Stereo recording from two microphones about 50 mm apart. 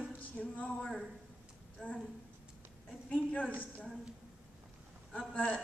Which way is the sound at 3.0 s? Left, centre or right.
Left.